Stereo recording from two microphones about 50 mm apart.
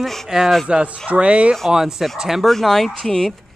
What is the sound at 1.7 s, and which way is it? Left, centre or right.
Speech, centre.